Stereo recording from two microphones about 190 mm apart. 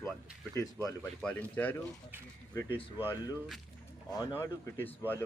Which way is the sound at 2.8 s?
30° left (ahead or behind).